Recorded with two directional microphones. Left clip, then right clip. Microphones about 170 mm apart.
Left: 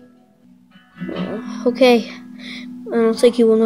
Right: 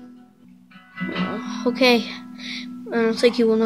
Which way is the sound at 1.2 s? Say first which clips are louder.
Left 6 dB; 10° left (ahead or behind).